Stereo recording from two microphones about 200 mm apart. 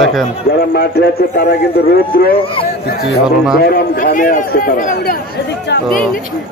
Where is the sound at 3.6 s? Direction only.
50° left (ahead or behind).